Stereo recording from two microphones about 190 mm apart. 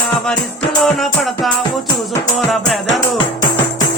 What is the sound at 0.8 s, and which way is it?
Music, centre (ahead or behind).